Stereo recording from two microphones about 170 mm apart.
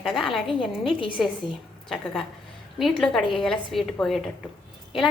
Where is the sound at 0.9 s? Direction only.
30° left (ahead or behind).